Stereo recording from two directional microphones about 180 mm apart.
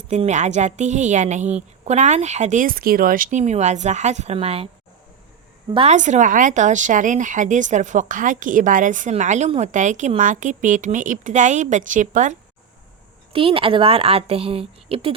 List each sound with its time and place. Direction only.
0.1 s a woman's voice: 40° right (ahead or behind)
5.7 s speech: 35° right (ahead or behind)
13.3 s a woman's voice: 30° right (ahead or behind)